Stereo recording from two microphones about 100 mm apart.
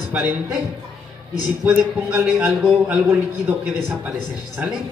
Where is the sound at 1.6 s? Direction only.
15° right (ahead or behind).